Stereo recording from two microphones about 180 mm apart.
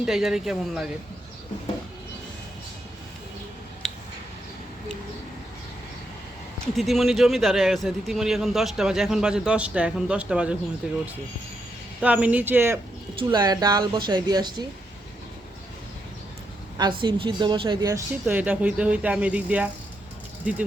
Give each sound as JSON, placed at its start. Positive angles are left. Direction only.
{"t": 0.0, "sound": "speech", "side_deg": -5}
{"t": 6.7, "sound": "speech", "side_deg": 0}
{"t": 12.0, "sound": "a woman's voice", "side_deg": -10}
{"t": 16.7, "sound": "a woman's voice", "side_deg": -25}